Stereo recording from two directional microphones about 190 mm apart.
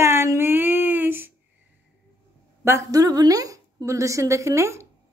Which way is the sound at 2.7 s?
15° right (ahead or behind).